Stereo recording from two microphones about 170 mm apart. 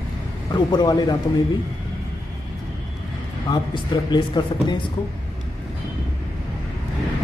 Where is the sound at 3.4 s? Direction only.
25° left (ahead or behind).